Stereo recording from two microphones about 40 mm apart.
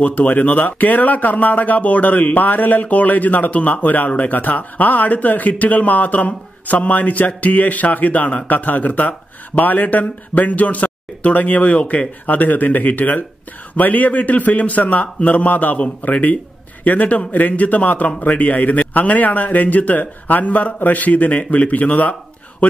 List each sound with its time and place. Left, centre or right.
0.0 s speech: left
11.8 s speech: left
12.3 s speech: left